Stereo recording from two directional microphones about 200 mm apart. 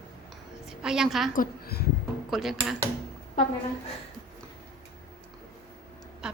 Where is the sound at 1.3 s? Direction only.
50° left (ahead or behind).